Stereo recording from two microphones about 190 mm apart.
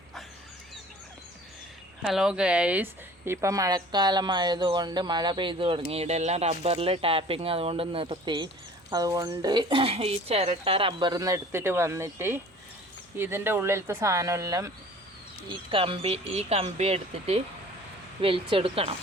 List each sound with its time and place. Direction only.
2.0 s speech: centre (ahead or behind)
15.7 s speech: 30° right (ahead or behind)